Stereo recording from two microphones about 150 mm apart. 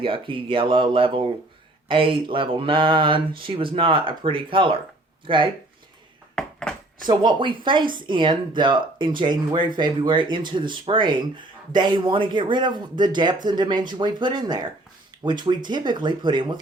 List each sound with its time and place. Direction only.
0.0 s speech: 35° right (ahead or behind)
6.3 s a sound: 5° left (ahead or behind)
7.1 s speech: 30° right (ahead or behind)